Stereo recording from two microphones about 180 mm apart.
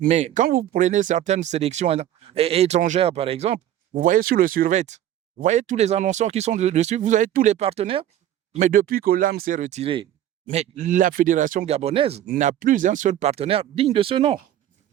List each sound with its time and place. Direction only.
0.0 s speech: 40° right (ahead or behind)
0.4 s speech: 55° right (ahead or behind); by 3.6 s 35° right (ahead or behind)
3.9 s speech: 50° right (ahead or behind); by 8.0 s 35° right (ahead or behind)
8.5 s speech: 45° right (ahead or behind); by 10.1 s 30° right (ahead or behind)
10.5 s speech: 40° right (ahead or behind)
12.2 s speech: 45° right (ahead or behind); by 14.3 s 30° right (ahead or behind)